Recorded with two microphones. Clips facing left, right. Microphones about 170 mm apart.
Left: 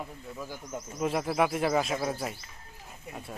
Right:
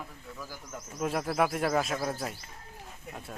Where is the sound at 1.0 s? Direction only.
Centre (ahead or behind).